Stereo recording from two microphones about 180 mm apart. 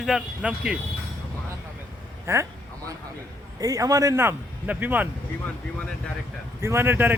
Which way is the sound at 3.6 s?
20° right (ahead or behind).